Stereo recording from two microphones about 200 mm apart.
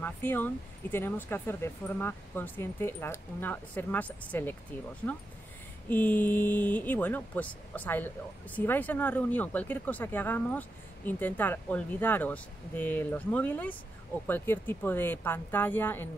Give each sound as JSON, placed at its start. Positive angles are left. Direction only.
{"t": 0.0, "sound": "speech", "side_deg": 10}